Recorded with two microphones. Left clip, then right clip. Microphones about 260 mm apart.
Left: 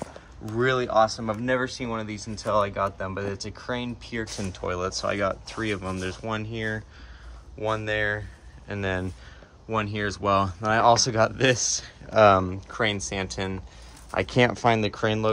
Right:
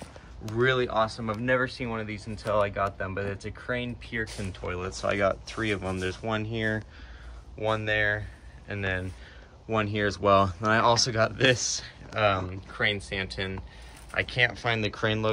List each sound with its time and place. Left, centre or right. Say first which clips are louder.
0.6 s speech: left 3 dB; centre